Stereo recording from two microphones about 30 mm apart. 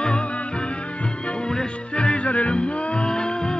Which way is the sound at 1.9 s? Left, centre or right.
Left.